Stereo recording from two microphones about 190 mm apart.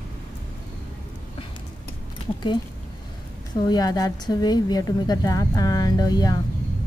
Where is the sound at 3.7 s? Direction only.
20° left (ahead or behind).